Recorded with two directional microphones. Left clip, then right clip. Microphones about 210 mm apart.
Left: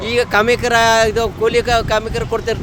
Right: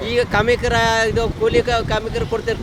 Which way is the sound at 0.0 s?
55° left (ahead or behind).